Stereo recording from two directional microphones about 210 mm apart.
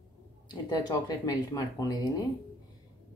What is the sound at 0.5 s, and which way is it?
Speech, 20° left (ahead or behind).